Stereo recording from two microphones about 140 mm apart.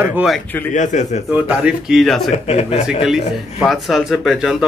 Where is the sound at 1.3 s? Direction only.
10° right (ahead or behind).